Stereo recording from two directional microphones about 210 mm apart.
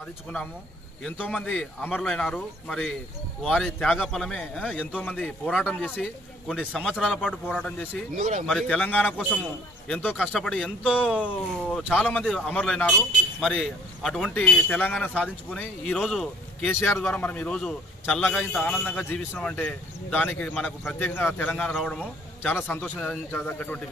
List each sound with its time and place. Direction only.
1.0 s speech: 5° left (ahead or behind)
8.2 s speech: 35° right (ahead or behind)
8.5 s a man's voice: 5° left (ahead or behind)